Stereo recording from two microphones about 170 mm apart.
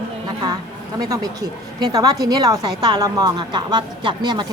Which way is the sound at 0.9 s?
20° right (ahead or behind).